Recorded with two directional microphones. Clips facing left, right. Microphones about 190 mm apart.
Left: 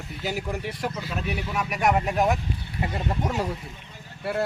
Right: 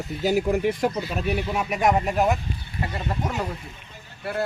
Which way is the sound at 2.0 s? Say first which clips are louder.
Right 1 dB; 5° right (ahead or behind).